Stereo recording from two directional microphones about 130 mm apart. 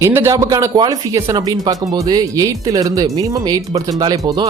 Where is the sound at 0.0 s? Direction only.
20° right (ahead or behind).